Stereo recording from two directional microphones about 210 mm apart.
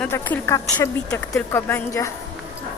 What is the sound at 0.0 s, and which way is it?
A woman's voice, 5° left (ahead or behind).